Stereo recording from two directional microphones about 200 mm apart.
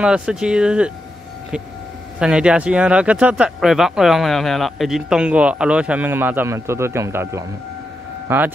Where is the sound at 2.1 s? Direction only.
5° right (ahead or behind).